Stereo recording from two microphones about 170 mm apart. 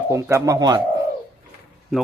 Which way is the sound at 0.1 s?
15° right (ahead or behind).